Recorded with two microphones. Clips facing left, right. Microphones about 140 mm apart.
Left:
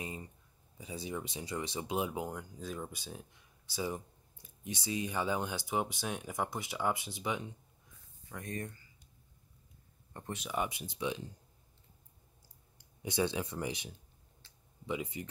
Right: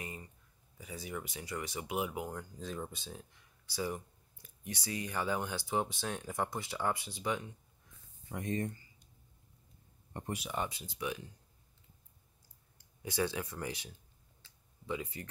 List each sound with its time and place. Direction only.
0.0 s speech: 20° left (ahead or behind)
2.3 s speech: 5° left (ahead or behind)
8.3 s speech: 20° right (ahead or behind)
10.1 s speech: 15° right (ahead or behind)
10.4 s speech: 5° left (ahead or behind)
10.7 s speech: 20° left (ahead or behind)
12.7 s speech: 20° left (ahead or behind)
14.9 s speech: 20° left (ahead or behind)